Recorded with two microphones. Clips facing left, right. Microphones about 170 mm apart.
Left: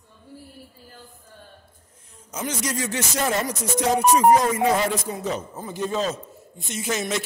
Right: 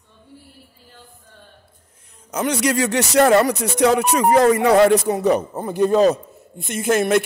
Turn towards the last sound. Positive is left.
turn(degrees=-55)  # may be behind; listen again after turning